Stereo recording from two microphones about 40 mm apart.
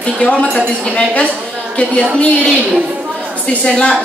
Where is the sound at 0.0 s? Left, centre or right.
Left.